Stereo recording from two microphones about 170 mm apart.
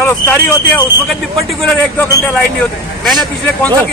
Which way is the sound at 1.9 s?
10° left (ahead or behind).